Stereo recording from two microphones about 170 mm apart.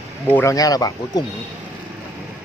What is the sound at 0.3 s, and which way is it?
Speech, 15° left (ahead or behind).